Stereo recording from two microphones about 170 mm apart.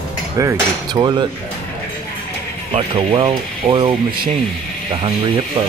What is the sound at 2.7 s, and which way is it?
Speech, 35° right (ahead or behind).